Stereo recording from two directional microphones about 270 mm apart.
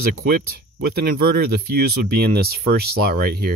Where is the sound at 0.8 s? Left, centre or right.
Right.